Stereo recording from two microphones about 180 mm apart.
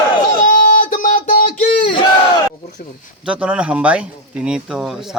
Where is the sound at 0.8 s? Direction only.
50° left (ahead or behind).